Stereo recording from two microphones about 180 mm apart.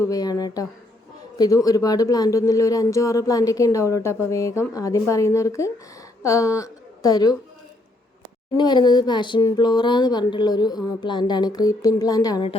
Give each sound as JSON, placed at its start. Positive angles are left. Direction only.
{"t": 0.0, "sound": "a woman's voice", "side_deg": 20}
{"t": 8.5, "sound": "speech", "side_deg": 25}